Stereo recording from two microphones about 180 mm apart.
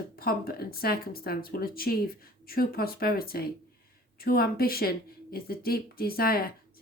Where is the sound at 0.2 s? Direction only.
55° left (ahead or behind).